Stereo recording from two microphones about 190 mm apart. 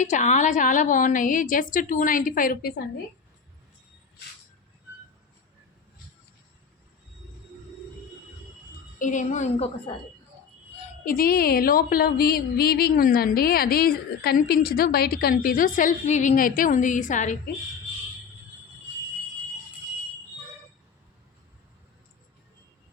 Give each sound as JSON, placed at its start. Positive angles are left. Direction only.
{"t": 0.0, "sound": "a woman's voice", "side_deg": 40}
{"t": 9.0, "sound": "a woman's voice", "side_deg": 40}
{"t": 11.0, "sound": "a woman's voice", "side_deg": 50}